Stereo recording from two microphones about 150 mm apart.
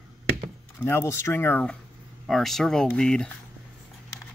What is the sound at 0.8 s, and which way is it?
Speech, 15° left (ahead or behind).